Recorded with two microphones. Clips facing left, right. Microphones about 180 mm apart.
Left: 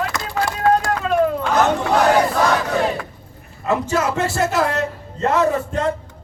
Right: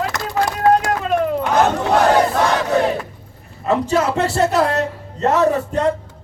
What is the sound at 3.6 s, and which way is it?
A man's voice, 35° right (ahead or behind).